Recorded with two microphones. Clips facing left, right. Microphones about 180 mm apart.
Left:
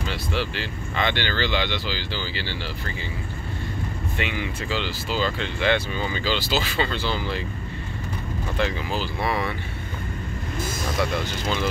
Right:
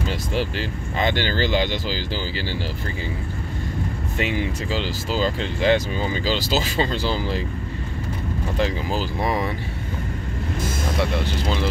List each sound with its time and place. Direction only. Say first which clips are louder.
0.1 s speech: even; 45° right (ahead or behind)
4.2 s speech: right 5 dB; 40° right (ahead or behind)
8.5 s speech: right 2 dB; 40° right (ahead or behind)
11.0 s speech: right 2 dB; 30° right (ahead or behind)